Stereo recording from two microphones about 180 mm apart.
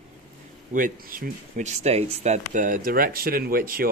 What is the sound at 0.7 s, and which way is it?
Speech, 50° right (ahead or behind).